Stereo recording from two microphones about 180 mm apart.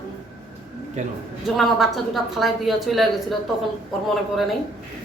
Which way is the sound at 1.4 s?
Centre (ahead or behind).